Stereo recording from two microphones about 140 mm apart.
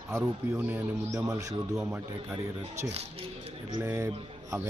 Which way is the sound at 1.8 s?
5° right (ahead or behind).